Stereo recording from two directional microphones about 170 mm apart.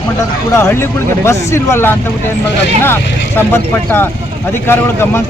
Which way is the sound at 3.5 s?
10° left (ahead or behind).